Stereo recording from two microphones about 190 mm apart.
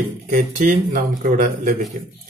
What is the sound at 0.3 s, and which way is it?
Speech, 40° right (ahead or behind).